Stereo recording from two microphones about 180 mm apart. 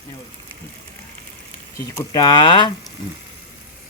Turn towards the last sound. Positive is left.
turn(degrees=25)  # may be behind; listen again after turning